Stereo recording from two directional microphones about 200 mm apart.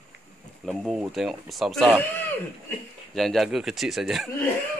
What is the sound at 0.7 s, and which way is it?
A man's voice, centre (ahead or behind).